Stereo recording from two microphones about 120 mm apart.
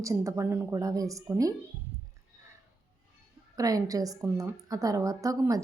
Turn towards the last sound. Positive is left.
turn(degrees=-30)  # may be behind; listen again after turning